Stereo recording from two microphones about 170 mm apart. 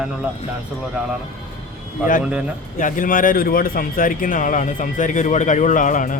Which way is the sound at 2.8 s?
55° left (ahead or behind).